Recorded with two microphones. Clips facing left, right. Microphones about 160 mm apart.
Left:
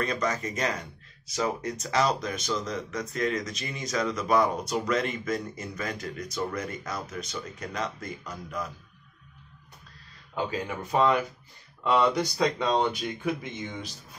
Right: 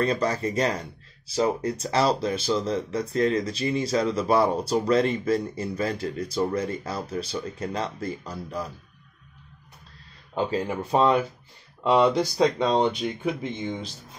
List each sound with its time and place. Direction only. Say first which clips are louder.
0.0 s speech: right 5 dB; 30° right (ahead or behind)
10.3 s speech: right 5 dB; 30° right (ahead or behind)